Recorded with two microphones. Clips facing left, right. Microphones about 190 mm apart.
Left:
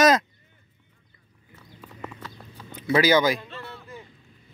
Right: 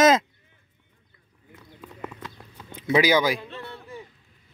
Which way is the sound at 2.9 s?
15° right (ahead or behind).